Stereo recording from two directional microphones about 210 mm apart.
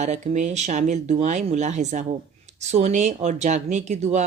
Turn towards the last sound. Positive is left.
turn(degrees=-35)  # may be behind; listen again after turning